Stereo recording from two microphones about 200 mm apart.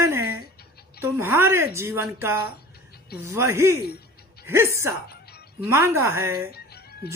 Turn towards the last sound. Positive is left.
turn(degrees=50)  # may be behind; listen again after turning